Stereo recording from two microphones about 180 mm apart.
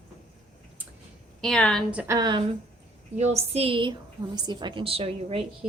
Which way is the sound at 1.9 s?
5° right (ahead or behind).